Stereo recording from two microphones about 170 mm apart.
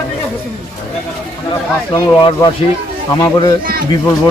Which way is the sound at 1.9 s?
25° left (ahead or behind).